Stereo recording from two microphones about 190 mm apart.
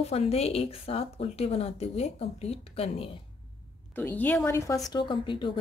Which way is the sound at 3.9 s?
10° left (ahead or behind).